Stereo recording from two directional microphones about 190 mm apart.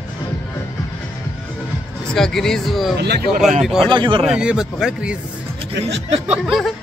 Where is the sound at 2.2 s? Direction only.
5° left (ahead or behind).